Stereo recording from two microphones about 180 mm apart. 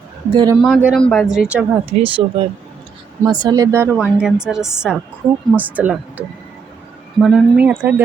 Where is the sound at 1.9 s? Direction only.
30° right (ahead or behind).